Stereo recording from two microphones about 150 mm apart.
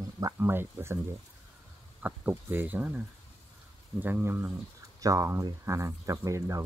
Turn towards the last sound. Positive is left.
turn(degrees=-20)  # may be behind; listen again after turning